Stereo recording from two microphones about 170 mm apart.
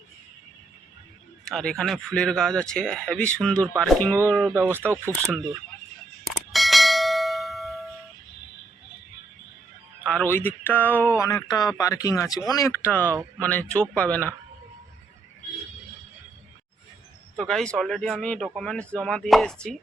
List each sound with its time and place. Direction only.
1.5 s speech: 5° left (ahead or behind)
4.5 s speech: 15° right (ahead or behind)
6.2 s bell: centre (ahead or behind)
10.0 s speech: 5° left (ahead or behind)
17.3 s speech: centre (ahead or behind)